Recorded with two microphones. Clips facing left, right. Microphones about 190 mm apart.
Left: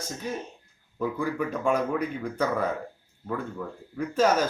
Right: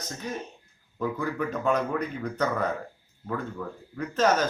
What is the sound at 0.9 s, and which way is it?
A man's voice, 5° left (ahead or behind).